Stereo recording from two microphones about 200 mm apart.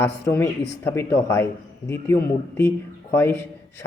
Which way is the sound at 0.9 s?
10° left (ahead or behind).